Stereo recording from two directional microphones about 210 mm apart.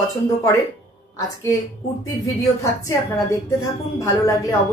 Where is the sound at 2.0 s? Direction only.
15° left (ahead or behind).